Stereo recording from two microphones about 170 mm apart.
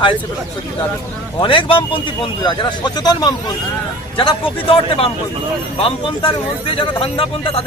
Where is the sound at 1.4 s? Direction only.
30° left (ahead or behind).